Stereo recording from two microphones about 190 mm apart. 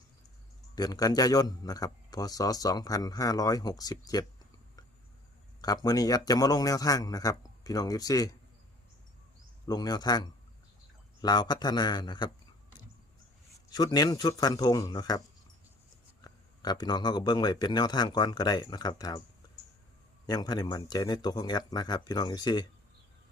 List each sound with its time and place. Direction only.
0.8 s a man's voice: 20° left (ahead or behind)
5.6 s a man's voice: 20° left (ahead or behind)
9.6 s a man's voice: 20° left (ahead or behind)
13.7 s a man's voice: 20° left (ahead or behind)
16.2 s a man's voice: 20° left (ahead or behind)
20.2 s a man's voice: 20° left (ahead or behind)